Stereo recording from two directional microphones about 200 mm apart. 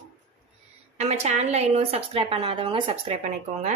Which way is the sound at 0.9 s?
30° right (ahead or behind).